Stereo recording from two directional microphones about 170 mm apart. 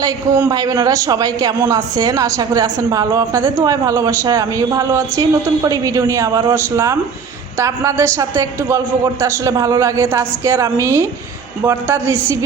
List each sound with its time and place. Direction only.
0.0 s a man's voice: 20° right (ahead or behind)